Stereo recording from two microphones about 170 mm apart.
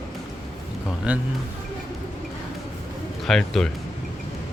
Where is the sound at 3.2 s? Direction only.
Centre (ahead or behind).